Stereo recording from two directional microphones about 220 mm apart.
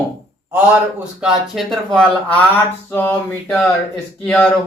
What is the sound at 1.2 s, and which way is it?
Speech, centre (ahead or behind).